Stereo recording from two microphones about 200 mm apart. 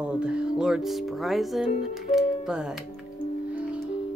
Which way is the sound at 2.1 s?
5° right (ahead or behind).